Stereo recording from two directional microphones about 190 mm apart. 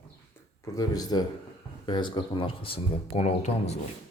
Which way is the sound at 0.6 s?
20° left (ahead or behind).